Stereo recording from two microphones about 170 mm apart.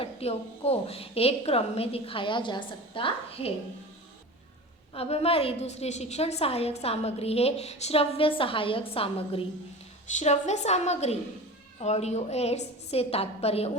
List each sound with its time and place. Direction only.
0.0 s a woman's voice: 35° left (ahead or behind)
4.9 s a woman's voice: 35° left (ahead or behind)